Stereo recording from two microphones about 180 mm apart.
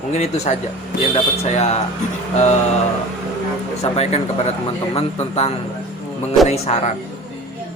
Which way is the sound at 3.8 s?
35° left (ahead or behind).